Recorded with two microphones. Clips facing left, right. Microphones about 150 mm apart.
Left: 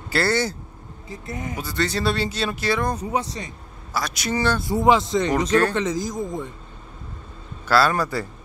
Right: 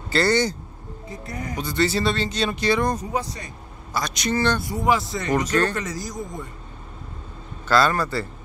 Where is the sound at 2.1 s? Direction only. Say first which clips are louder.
Even; 10° left (ahead or behind).